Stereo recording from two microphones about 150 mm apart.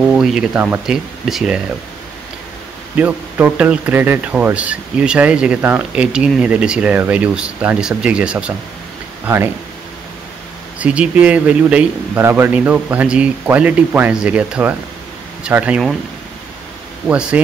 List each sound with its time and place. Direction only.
0.1 s speech: 5° right (ahead or behind)
3.0 s speech: 15° right (ahead or behind)
10.8 s speech: 10° right (ahead or behind)
17.1 s speech: 5° right (ahead or behind)